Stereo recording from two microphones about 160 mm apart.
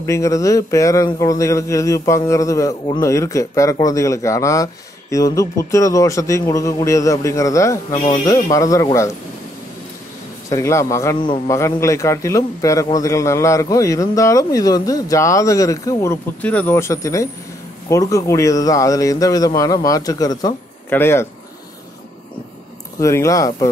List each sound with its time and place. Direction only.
0.0 s speech: 20° left (ahead or behind)
7.9 s speech: 50° left (ahead or behind)
8.3 s speech: 20° left (ahead or behind)
10.5 s speech: 20° left (ahead or behind)
11.1 s speech: 30° left (ahead or behind)
11.5 s speech: 20° left (ahead or behind)
22.9 s speech: 20° left (ahead or behind)